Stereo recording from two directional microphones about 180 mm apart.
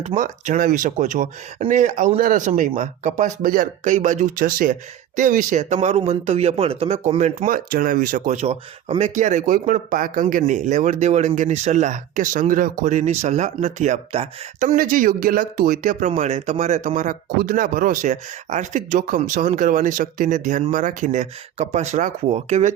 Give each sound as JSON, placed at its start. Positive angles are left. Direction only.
{"t": 0.0, "sound": "speech", "side_deg": -45}
{"t": 14.6, "sound": "speech", "side_deg": -50}